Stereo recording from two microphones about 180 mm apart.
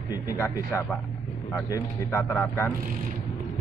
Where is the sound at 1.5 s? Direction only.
10° left (ahead or behind).